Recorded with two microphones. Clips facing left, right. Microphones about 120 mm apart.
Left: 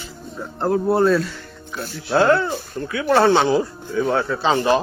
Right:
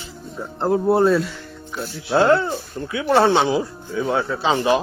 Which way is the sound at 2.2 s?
25° right (ahead or behind).